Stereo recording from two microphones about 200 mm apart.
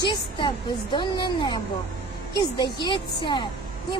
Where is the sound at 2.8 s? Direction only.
25° left (ahead or behind).